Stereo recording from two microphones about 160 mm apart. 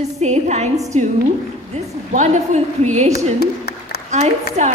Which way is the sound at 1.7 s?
45° right (ahead or behind).